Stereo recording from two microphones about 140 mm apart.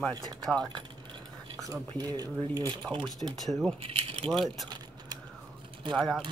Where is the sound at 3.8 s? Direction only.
40° right (ahead or behind).